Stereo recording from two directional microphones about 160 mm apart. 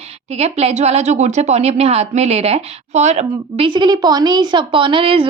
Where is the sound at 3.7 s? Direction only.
25° right (ahead or behind).